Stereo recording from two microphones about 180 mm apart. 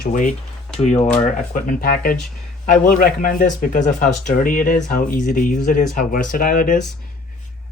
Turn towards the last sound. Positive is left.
turn(degrees=50)  # may be behind; listen again after turning